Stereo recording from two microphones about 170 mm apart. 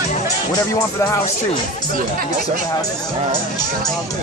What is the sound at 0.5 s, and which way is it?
Speech, 15° left (ahead or behind).